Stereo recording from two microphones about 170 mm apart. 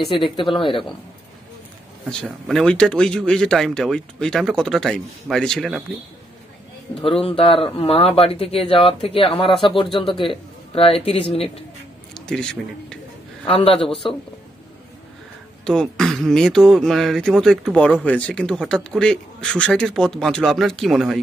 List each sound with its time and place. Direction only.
0.0 s speech: centre (ahead or behind)
0.4 s speech: 30° left (ahead or behind)
2.0 s speech: centre (ahead or behind)
7.0 s speech: 30° left (ahead or behind)
12.1 s a man's voice: 5° left (ahead or behind)
13.5 s speech: 35° left (ahead or behind)
15.6 s speech: 5° left (ahead or behind)